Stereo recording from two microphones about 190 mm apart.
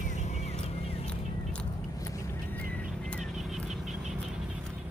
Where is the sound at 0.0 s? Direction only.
40° left (ahead or behind).